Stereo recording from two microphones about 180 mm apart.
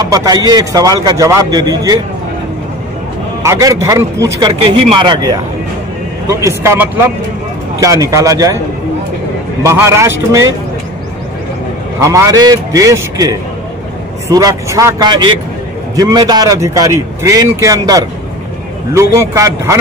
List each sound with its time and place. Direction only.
0.0 s a man's voice: 20° right (ahead or behind)
3.4 s a man's voice: 15° right (ahead or behind)
9.6 s a man's voice: 15° right (ahead or behind)
12.0 s a man's voice: 15° right (ahead or behind)